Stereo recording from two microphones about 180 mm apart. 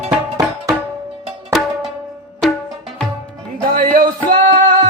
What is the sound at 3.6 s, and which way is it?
Music, 50° right (ahead or behind).